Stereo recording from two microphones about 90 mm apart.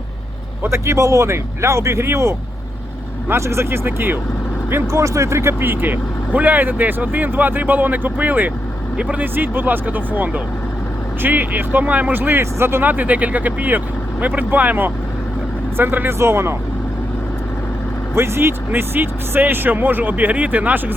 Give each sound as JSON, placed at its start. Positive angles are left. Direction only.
{"t": 0.6, "sound": "speech", "side_deg": -30}
{"t": 18.1, "sound": "speech", "side_deg": -30}